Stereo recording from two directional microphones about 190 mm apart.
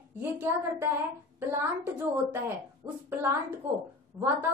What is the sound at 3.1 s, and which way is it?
A woman's voice, 10° right (ahead or behind).